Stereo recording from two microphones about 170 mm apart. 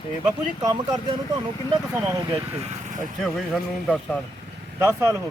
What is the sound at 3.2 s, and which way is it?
Speech, centre (ahead or behind).